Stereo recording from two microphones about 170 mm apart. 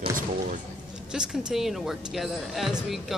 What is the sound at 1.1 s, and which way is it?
Speech, 5° right (ahead or behind).